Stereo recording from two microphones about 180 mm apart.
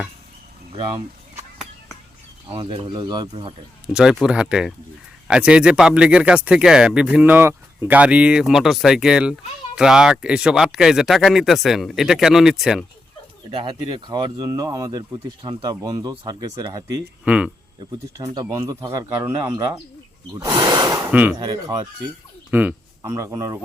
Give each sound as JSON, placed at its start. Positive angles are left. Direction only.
{"t": 0.7, "sound": "speech", "side_deg": -30}
{"t": 2.5, "sound": "speech", "side_deg": -30}
{"t": 3.9, "sound": "speech", "side_deg": -5}
{"t": 13.5, "sound": "speech", "side_deg": -30}
{"t": 17.2, "sound": "speech", "side_deg": -5}
{"t": 17.7, "sound": "speech", "side_deg": -20}
{"t": 21.3, "sound": "speech", "side_deg": -20}